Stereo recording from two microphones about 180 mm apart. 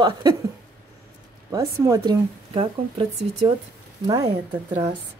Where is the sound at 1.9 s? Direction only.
25° right (ahead or behind).